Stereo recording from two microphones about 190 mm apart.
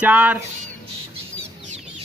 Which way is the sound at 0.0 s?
5° right (ahead or behind).